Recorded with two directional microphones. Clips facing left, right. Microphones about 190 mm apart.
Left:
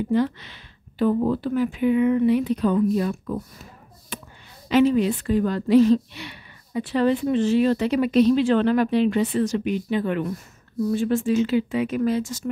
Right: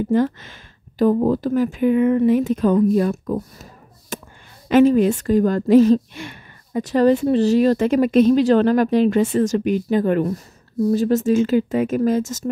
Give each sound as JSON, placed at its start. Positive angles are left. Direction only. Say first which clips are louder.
{"t": 0.1, "sound": "a woman's voice", "louder": "right 3 dB", "side_deg": -45}
{"t": 4.1, "sound": "a sound", "louder": "right 5 dB", "side_deg": -45}
{"t": 4.6, "sound": "a woman's voice", "louder": "right 5 dB", "side_deg": -50}